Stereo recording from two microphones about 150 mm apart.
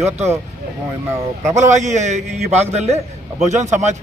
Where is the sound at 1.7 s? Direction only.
50° right (ahead or behind).